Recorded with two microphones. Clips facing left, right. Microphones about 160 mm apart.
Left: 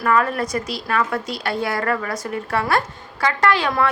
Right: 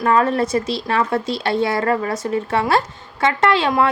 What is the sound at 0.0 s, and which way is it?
Speech, 25° right (ahead or behind).